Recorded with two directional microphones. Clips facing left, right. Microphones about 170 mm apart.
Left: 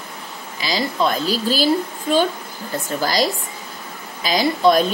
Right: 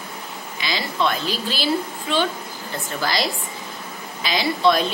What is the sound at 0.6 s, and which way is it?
Speech, 40° left (ahead or behind).